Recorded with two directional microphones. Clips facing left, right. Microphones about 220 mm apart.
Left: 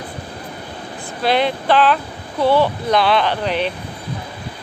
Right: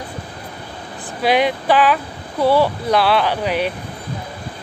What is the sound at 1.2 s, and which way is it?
Speech, 10° right (ahead or behind).